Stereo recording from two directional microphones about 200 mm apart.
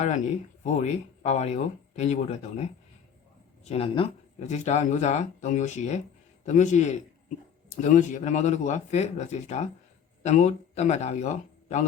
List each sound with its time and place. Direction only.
0.6 s a man's voice: 35° left (ahead or behind)